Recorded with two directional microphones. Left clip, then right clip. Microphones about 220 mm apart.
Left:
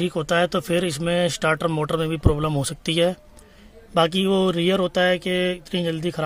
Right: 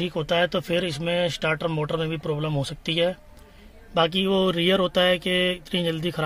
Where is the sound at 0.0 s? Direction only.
15° left (ahead or behind).